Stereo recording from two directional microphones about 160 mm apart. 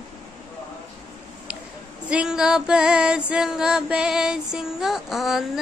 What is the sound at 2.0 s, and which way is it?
Female singing, 5° right (ahead or behind).